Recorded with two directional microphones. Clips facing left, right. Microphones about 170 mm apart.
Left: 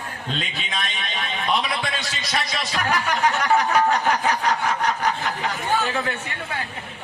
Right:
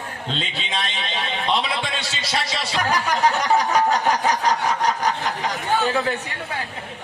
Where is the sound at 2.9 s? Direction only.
35° right (ahead or behind).